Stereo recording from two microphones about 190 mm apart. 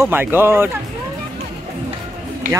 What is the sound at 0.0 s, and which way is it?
Speech, 10° right (ahead or behind).